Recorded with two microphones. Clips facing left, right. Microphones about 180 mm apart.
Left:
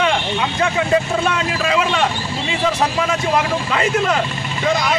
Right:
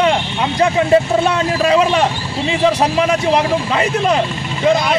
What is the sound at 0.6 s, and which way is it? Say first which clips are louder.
Speech: right 6 dB; 35° right (ahead or behind).